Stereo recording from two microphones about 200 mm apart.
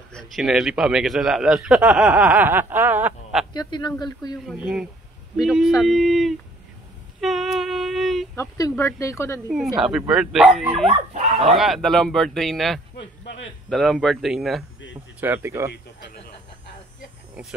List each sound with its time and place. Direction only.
0.1 s a man's voice: centre (ahead or behind)
3.5 s a man's voice: 20° left (ahead or behind)
4.5 s a man's voice: centre (ahead or behind)
7.2 s child singing: centre (ahead or behind)
8.4 s speech: 15° left (ahead or behind)
9.5 s a man's voice: centre (ahead or behind)
10.9 s speech: 30° right (ahead or behind)
11.5 s a man's voice: centre (ahead or behind)